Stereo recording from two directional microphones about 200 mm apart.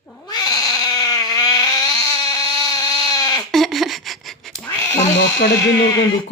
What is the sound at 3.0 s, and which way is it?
Goat, 20° left (ahead or behind).